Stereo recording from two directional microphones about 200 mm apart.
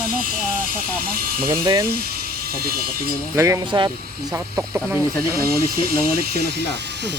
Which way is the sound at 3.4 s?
15° right (ahead or behind).